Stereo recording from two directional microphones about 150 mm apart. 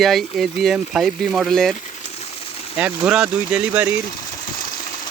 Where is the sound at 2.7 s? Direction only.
10° right (ahead or behind).